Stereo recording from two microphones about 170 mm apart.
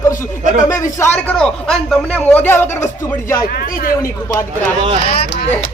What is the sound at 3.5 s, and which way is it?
Speech, 60° left (ahead or behind).